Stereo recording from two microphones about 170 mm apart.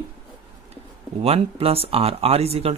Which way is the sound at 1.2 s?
35° right (ahead or behind).